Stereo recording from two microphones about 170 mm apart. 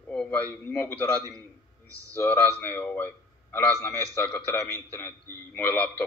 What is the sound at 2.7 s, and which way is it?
Speech, 10° left (ahead or behind).